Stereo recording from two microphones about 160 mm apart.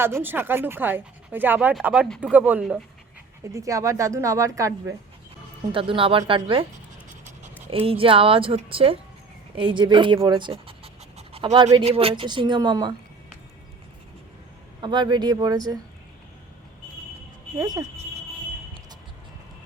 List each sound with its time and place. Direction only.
0.0 s speech: 15° right (ahead or behind)
3.4 s speech: 20° right (ahead or behind)
5.7 s a woman's voice: 35° right (ahead or behind)
7.7 s a woman's voice: 35° right (ahead or behind)
14.8 s speech: 30° right (ahead or behind)
17.6 s speech: 20° right (ahead or behind)